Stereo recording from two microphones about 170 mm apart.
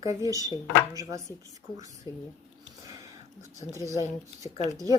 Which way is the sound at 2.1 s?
20° left (ahead or behind).